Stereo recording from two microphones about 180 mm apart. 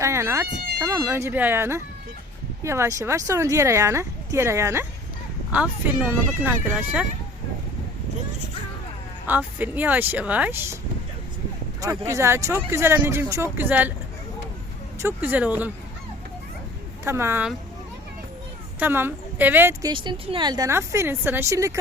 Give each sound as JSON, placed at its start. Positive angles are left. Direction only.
{"t": 0.0, "sound": "speech", "side_deg": -15}
{"t": 9.2, "sound": "speech", "side_deg": -10}
{"t": 11.8, "sound": "speech", "side_deg": -15}
{"t": 14.9, "sound": "speech", "side_deg": -10}
{"t": 17.0, "sound": "speech", "side_deg": -15}
{"t": 18.8, "sound": "speech", "side_deg": -10}
{"t": 19.9, "sound": "speech", "side_deg": -25}